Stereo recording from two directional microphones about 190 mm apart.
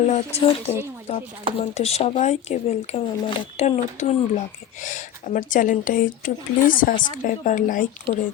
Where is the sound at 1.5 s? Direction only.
35° left (ahead or behind).